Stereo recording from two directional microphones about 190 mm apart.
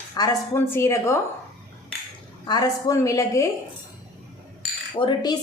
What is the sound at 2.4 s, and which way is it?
A woman's voice, 20° left (ahead or behind).